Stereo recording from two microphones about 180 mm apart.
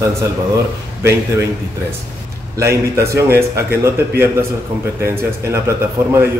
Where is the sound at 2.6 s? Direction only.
15° right (ahead or behind).